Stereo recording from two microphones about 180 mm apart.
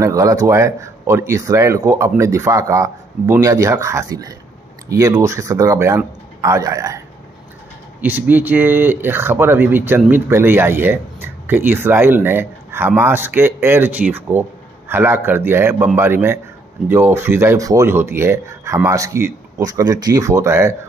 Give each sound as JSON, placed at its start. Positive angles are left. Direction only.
{"t": 0.0, "sound": "speech", "side_deg": -20}
{"t": 8.0, "sound": "speech", "side_deg": -10}